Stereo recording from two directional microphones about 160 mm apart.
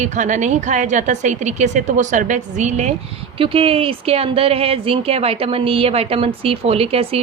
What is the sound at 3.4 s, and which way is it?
Speech, 35° right (ahead or behind).